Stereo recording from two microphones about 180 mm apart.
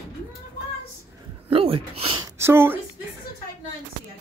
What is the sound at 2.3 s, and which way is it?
Speech, 15° right (ahead or behind).